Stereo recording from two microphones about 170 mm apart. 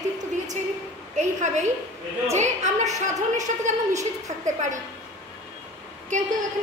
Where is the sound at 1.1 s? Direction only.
45° right (ahead or behind).